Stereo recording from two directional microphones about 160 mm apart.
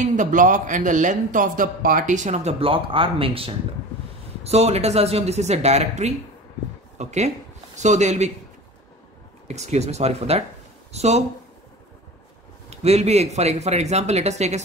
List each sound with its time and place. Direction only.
0.0 s a man's voice: 55° right (ahead or behind)
9.5 s a man's voice: 45° right (ahead or behind)
12.6 s a man's voice: 45° right (ahead or behind)